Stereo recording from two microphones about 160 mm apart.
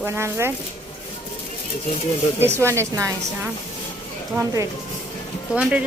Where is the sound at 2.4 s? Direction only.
15° right (ahead or behind).